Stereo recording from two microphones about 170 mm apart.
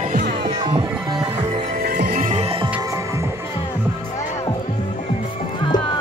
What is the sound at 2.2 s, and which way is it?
Music, 40° right (ahead or behind).